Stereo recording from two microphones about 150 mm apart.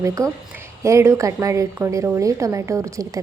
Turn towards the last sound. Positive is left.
turn(degrees=-20)  # may be behind; listen again after turning